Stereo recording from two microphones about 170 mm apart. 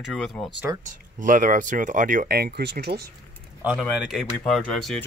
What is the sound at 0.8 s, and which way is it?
Speech, 50° right (ahead or behind).